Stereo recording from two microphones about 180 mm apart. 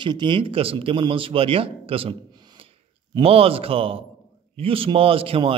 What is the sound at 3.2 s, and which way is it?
A man's voice, 30° right (ahead or behind).